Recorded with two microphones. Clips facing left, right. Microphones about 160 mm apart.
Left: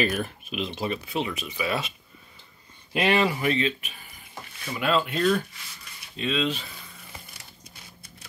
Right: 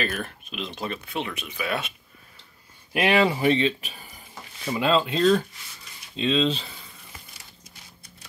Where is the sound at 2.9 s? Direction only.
10° right (ahead or behind).